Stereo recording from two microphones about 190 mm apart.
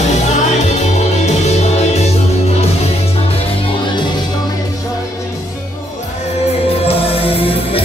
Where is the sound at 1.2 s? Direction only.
35° left (ahead or behind).